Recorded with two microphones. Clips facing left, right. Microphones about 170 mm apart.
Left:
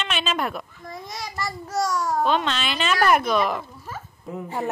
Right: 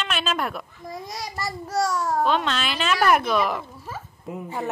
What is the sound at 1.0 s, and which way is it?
Speech, 35° right (ahead or behind).